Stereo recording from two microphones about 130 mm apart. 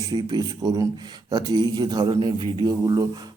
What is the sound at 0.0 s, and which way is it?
Speech, 35° right (ahead or behind).